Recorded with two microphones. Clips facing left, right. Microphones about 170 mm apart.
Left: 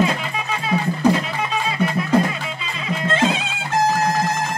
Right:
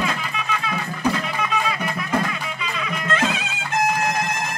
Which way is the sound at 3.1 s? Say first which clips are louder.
Left 4 dB; 30° left (ahead or behind).